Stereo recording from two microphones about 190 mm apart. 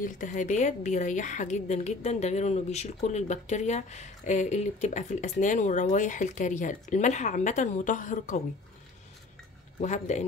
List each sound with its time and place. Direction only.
0.0 s a woman's voice: 40° left (ahead or behind)
9.8 s a woman's voice: 40° left (ahead or behind)